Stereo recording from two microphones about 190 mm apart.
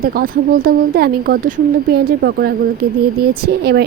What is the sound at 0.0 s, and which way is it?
Speech, 50° right (ahead or behind).